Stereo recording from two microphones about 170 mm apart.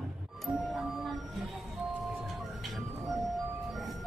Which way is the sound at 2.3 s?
Centre (ahead or behind).